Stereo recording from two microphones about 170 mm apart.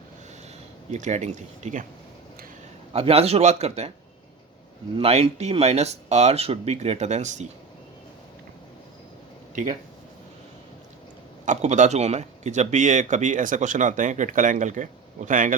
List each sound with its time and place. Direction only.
0.9 s speech: 45° right (ahead or behind)
2.9 s speech: 35° right (ahead or behind)
4.9 s speech: 35° right (ahead or behind)
11.4 s speech: 45° right (ahead or behind)